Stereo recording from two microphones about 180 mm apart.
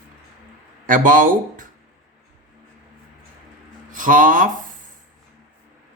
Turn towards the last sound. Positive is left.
turn(degrees=-45)  # may be behind; listen again after turning